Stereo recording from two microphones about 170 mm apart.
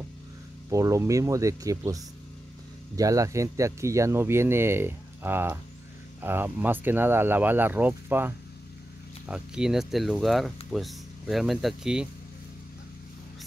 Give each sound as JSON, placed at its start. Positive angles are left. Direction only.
{"t": 0.7, "sound": "speech", "side_deg": -20}